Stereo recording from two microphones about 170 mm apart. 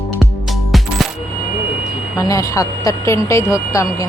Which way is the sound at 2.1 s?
20° left (ahead or behind).